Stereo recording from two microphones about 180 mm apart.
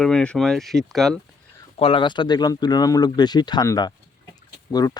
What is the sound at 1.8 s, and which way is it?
Speech, 30° left (ahead or behind).